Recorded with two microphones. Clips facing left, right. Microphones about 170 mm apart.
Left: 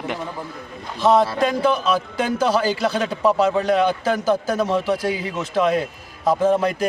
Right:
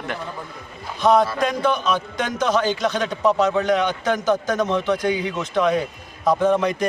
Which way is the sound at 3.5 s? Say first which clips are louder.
Even; 30° left (ahead or behind).